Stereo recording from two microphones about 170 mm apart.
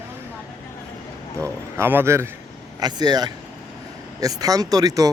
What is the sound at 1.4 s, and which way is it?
Speech, 15° right (ahead or behind).